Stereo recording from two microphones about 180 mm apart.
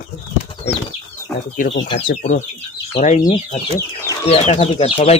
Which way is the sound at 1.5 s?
50° left (ahead or behind).